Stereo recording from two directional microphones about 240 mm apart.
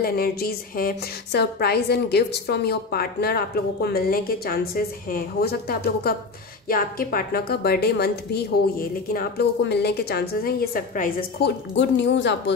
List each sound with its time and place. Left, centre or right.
0.0 s a woman's voice: left